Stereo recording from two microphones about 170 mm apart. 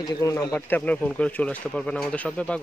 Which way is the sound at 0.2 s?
20° left (ahead or behind).